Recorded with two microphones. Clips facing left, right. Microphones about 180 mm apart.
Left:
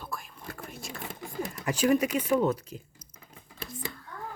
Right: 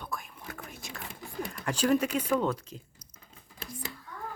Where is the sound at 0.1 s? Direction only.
Centre (ahead or behind).